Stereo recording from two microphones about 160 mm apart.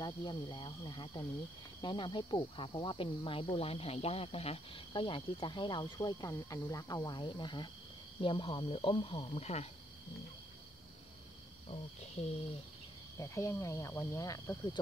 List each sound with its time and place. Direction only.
0.0 s speech: 25° left (ahead or behind); by 9.7 s 40° left (ahead or behind)
11.7 s speech: 40° left (ahead or behind)
13.2 s speech: 20° left (ahead or behind)